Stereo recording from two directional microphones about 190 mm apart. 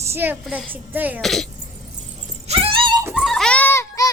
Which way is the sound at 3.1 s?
Centre (ahead or behind).